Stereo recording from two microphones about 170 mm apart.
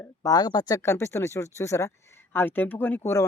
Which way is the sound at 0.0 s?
20° left (ahead or behind).